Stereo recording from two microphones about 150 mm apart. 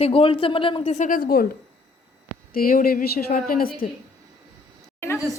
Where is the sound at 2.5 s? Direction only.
70° left (ahead or behind).